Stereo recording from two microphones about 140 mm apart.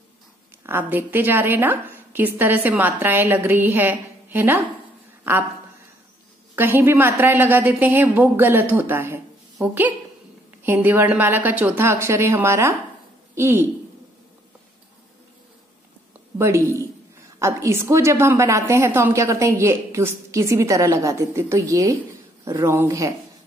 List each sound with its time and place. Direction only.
0.7 s a woman's voice: 15° right (ahead or behind)
6.5 s a woman's voice: 15° right (ahead or behind)
10.6 s a woman's voice: 15° right (ahead or behind)
16.3 s a woman's voice: 20° right (ahead or behind)